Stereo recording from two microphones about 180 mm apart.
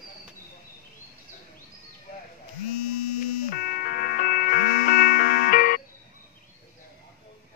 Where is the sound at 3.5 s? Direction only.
50° left (ahead or behind).